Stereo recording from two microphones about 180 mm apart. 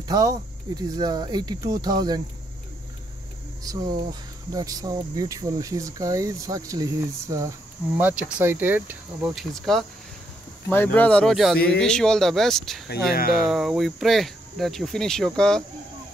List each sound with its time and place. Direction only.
0.1 s speech: 20° right (ahead or behind)
3.6 s speech: 20° right (ahead or behind); by 12.8 s centre (ahead or behind)
12.8 s speech: 60° left (ahead or behind)
13.5 s speech: centre (ahead or behind)